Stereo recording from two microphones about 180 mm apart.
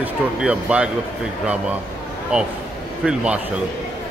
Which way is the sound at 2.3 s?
5° right (ahead or behind).